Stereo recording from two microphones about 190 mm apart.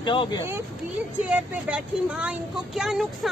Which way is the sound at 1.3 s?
5° right (ahead or behind).